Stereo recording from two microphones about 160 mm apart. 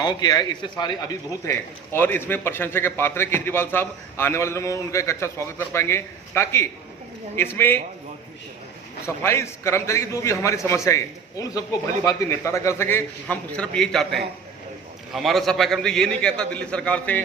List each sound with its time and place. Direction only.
0.0 s speech: 25° left (ahead or behind)
9.0 s a man's voice: 15° left (ahead or behind)